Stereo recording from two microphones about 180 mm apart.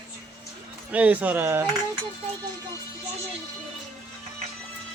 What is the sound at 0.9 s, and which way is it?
Speech, 10° right (ahead or behind).